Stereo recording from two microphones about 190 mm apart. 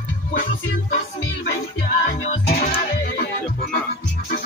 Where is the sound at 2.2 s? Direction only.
40° left (ahead or behind).